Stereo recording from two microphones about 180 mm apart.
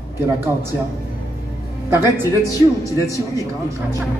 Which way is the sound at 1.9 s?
15° right (ahead or behind).